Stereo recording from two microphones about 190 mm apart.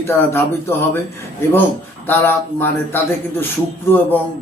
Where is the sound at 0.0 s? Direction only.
10° left (ahead or behind).